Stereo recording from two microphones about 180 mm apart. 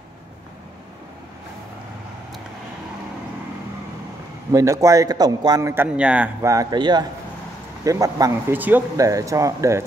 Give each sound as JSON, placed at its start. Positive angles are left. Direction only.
{"t": 4.5, "sound": "speech", "side_deg": -15}